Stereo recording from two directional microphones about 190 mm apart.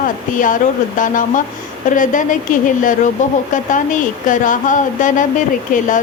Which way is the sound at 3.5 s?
40° left (ahead or behind).